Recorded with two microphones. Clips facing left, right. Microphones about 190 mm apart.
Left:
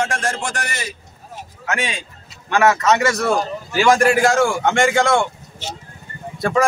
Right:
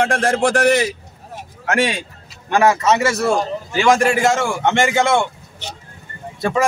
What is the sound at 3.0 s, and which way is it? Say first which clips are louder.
A man's voice: right 1 dB; 5° right (ahead or behind).